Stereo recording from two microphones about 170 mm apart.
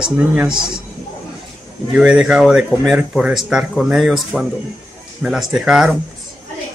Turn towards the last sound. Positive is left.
turn(degrees=-5)  # may be behind; listen again after turning